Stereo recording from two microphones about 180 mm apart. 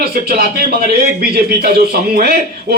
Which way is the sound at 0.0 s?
55° right (ahead or behind).